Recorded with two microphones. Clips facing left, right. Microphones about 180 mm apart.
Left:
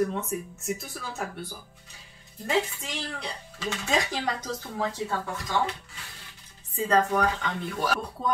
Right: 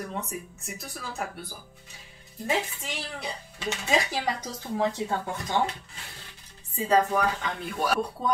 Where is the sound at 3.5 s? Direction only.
10° right (ahead or behind).